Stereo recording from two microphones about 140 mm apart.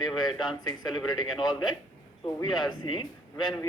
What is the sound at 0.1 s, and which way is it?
Speech, centre (ahead or behind).